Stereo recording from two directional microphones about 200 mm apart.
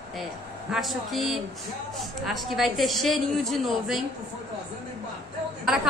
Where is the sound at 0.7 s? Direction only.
Centre (ahead or behind).